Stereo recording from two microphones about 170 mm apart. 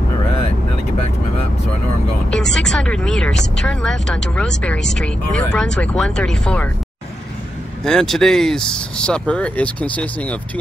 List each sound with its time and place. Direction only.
2.3 s speech: 5° left (ahead or behind)
7.8 s speech: 5° left (ahead or behind)